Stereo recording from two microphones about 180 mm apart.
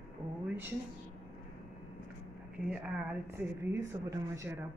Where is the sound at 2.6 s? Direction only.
5° right (ahead or behind).